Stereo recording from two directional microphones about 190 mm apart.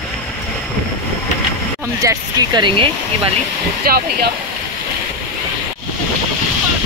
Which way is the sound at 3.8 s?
55° right (ahead or behind).